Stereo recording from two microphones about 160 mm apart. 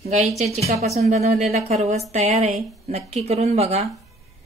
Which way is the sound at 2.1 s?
40° right (ahead or behind).